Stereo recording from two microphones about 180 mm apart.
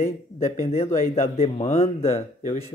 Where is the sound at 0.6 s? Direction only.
35° left (ahead or behind).